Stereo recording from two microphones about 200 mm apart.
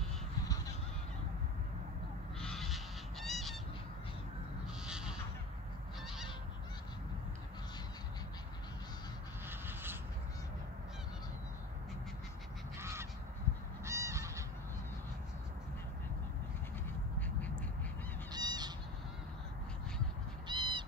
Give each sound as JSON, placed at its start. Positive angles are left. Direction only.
{"t": 2.4, "sound": "goose", "side_deg": 0}
{"t": 4.8, "sound": "crow", "side_deg": -5}
{"t": 6.0, "sound": "goose", "side_deg": 0}
{"t": 9.5, "sound": "creak", "side_deg": -10}
{"t": 12.7, "sound": "goose", "side_deg": -15}
{"t": 18.3, "sound": "goose", "side_deg": -20}
{"t": 20.4, "sound": "crow", "side_deg": -25}